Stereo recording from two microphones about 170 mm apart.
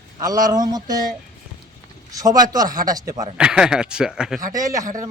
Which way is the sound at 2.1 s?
20° right (ahead or behind).